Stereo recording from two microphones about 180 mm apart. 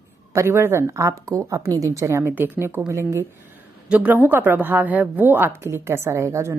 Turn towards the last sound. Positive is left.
turn(degrees=-15)  # may be behind; listen again after turning